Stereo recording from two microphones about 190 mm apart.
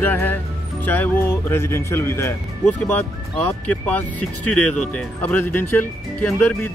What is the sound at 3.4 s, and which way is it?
Speech, 10° left (ahead or behind).